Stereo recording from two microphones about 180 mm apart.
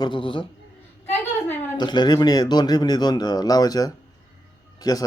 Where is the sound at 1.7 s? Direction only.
25° left (ahead or behind).